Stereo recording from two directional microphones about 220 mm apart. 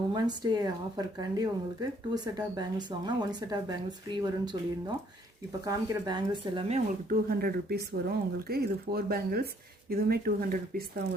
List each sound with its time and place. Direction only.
0.1 s speech: 20° right (ahead or behind)
5.6 s speech: 20° right (ahead or behind)
7.3 s speech: 45° right (ahead or behind)